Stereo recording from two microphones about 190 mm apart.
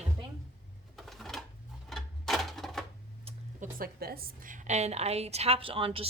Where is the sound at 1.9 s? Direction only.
Centre (ahead or behind).